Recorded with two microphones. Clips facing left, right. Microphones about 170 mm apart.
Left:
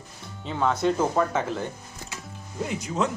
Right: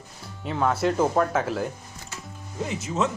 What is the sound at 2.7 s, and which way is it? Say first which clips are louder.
Speech: right 1 dB; 5° right (ahead or behind).